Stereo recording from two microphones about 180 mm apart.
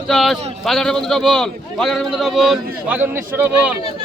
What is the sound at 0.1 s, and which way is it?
A man's voice, centre (ahead or behind).